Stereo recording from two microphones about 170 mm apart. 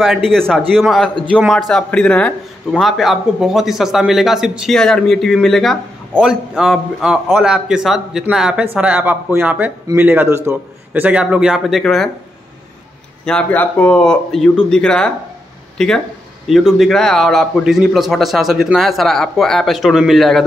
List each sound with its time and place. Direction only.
0.0 s a man's voice: centre (ahead or behind)
13.2 s a man's voice: 5° left (ahead or behind)